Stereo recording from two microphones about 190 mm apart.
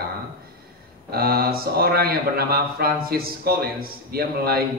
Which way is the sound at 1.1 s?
55° right (ahead or behind).